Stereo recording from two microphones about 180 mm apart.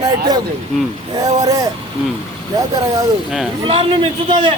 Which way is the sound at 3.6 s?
30° right (ahead or behind).